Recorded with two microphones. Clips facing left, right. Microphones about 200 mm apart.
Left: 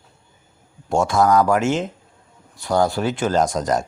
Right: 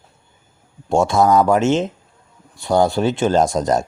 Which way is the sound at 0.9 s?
25° right (ahead or behind).